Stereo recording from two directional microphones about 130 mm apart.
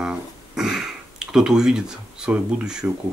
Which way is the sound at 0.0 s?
5° right (ahead or behind).